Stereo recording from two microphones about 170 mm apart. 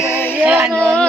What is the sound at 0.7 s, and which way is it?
Speech, 5° left (ahead or behind).